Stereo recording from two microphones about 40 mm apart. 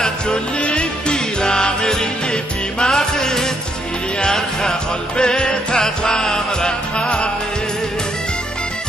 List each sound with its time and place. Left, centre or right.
0.6 s music: left